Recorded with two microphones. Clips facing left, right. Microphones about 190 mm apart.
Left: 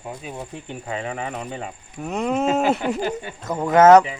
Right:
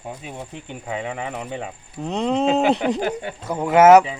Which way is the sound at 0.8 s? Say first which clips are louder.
Right 1 dB; 10° right (ahead or behind).